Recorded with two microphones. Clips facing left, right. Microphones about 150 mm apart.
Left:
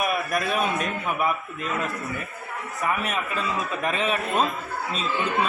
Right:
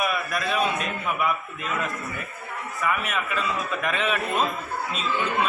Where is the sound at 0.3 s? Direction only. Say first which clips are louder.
Left 1 dB; 45° left (ahead or behind).